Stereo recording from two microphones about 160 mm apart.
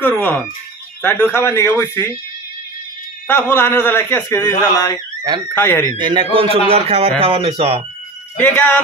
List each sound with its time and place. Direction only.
0.2 s a man's voice: 10° left (ahead or behind)
3.3 s a man's voice: 15° left (ahead or behind)
5.9 s a man's voice: 30° right (ahead or behind)
8.4 s a man's voice: 10° left (ahead or behind)